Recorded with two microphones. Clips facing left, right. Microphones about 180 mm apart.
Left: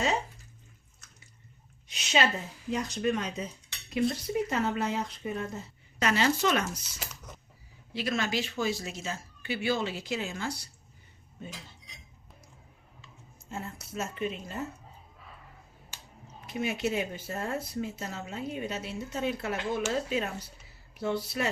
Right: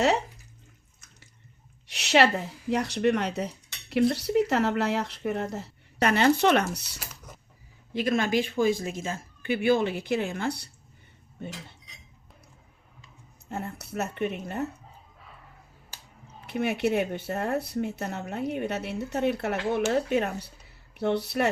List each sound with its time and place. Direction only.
1.9 s speech: 70° right (ahead or behind)
7.0 s a sound: 10° right (ahead or behind)
7.9 s speech: 50° right (ahead or behind)
13.5 s speech: 60° right (ahead or behind)
16.5 s speech: 65° right (ahead or behind)